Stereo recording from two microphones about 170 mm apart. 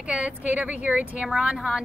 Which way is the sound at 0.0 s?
5° right (ahead or behind).